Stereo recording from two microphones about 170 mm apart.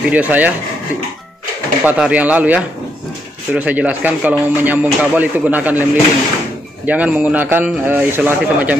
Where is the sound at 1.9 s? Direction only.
5° right (ahead or behind).